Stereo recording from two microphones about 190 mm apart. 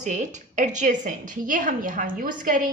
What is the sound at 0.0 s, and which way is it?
A woman's voice, 40° right (ahead or behind).